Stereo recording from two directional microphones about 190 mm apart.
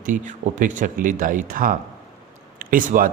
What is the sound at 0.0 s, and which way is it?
Speech, 45° right (ahead or behind).